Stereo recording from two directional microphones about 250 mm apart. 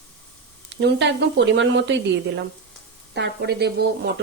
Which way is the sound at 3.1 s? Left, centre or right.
Right.